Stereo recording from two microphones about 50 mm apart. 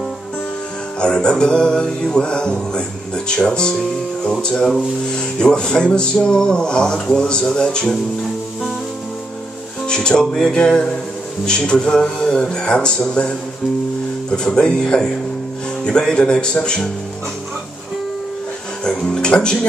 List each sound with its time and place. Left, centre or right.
1.0 s speech: centre
9.8 s speech: centre
14.3 s speech: centre
19.1 s speech: centre